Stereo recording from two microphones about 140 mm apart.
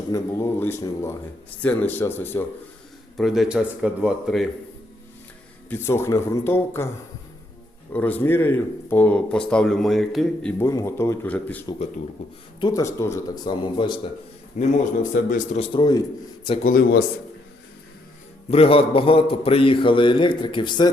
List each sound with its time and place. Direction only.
0.1 s speech: 20° left (ahead or behind)
3.2 s speech: centre (ahead or behind)
5.6 s speech: 15° left (ahead or behind)
7.9 s speech: 10° left (ahead or behind)
10.6 s speech: 20° left (ahead or behind)
12.2 s a man's voice: 50° left (ahead or behind)
12.5 s speech: 30° left (ahead or behind)
12.8 s speech: 20° left (ahead or behind)
14.5 s a man's voice: 65° left (ahead or behind)
15.1 s speech: 75° left (ahead or behind)
15.5 s a man's voice: 45° left (ahead or behind)
15.8 s speech: 25° left (ahead or behind)
16.6 s speech: 90° left
18.5 s a man's voice: 45° left (ahead or behind)